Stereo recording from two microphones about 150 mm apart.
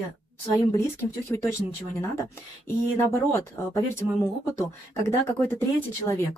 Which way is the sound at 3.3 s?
15° left (ahead or behind).